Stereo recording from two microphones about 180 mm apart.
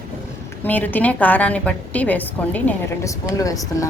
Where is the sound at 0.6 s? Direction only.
10° left (ahead or behind).